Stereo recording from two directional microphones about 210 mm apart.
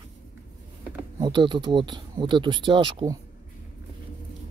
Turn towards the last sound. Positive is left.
turn(degrees=-25)  # may be behind; listen again after turning